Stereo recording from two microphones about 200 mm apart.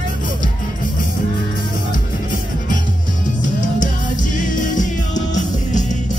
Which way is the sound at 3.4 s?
40° left (ahead or behind).